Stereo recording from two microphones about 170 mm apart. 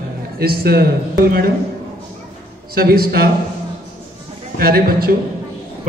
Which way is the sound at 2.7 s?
60° right (ahead or behind).